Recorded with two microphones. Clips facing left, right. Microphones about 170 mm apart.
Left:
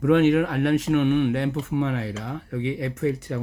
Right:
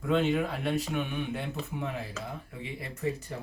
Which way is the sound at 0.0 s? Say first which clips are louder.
Left 9 dB; 80° left.